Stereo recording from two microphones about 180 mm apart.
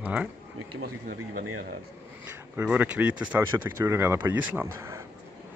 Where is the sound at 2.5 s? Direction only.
10° right (ahead or behind).